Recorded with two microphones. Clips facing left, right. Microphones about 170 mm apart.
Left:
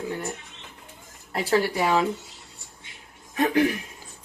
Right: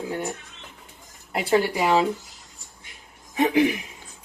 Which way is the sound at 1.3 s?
15° right (ahead or behind).